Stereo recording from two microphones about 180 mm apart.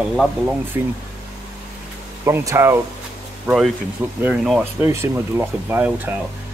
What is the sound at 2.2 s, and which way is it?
Speech, 15° right (ahead or behind).